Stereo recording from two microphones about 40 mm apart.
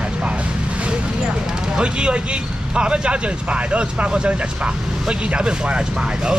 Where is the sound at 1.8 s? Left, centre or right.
Right.